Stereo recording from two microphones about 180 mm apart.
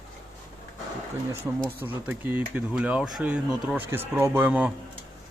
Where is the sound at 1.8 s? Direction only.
10° right (ahead or behind).